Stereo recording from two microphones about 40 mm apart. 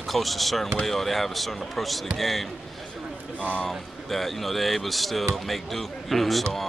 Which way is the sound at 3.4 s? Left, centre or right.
Left.